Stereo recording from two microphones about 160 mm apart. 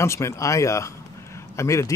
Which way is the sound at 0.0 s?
15° left (ahead or behind).